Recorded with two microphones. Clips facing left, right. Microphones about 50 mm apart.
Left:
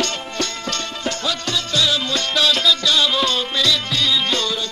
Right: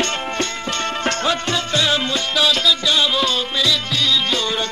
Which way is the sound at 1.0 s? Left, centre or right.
Right.